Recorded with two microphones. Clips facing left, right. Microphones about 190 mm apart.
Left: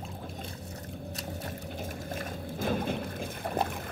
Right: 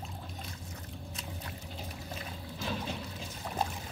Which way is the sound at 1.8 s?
50° left (ahead or behind).